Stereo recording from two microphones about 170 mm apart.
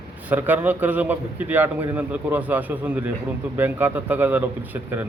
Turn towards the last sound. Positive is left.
turn(degrees=-10)  # may be behind; listen again after turning